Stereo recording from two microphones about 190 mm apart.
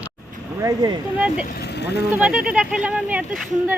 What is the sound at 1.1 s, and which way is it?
Speech, 5° right (ahead or behind).